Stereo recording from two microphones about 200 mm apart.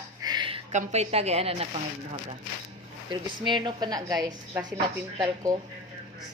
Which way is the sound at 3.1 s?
20° right (ahead or behind).